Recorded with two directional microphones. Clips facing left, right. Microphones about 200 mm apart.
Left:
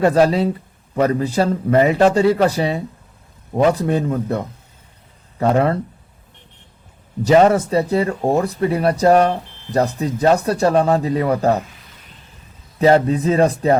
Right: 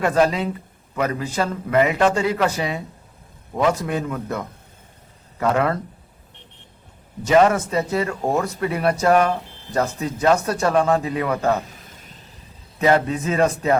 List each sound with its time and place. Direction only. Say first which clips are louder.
0.0 s speech: left 5 dB; 35° left (ahead or behind)
7.3 s speech: left 3 dB; 35° left (ahead or behind)
11.7 s a sound: right 2 dB; 45° right (ahead or behind)
12.8 s speech: left 5 dB; 35° left (ahead or behind)